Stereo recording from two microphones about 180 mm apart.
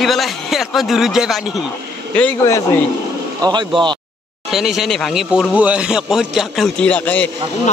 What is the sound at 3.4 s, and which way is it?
Speech, 25° right (ahead or behind).